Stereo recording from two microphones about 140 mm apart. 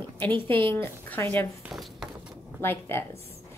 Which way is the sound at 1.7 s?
Centre (ahead or behind).